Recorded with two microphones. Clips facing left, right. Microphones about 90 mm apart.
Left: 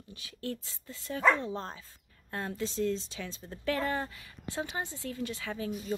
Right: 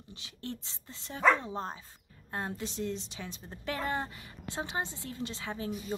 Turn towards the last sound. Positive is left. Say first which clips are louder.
# left 1 dB
turn(degrees=-25)  # may be behind; listen again after turning